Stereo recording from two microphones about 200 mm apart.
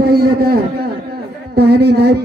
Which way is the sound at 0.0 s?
50° right (ahead or behind).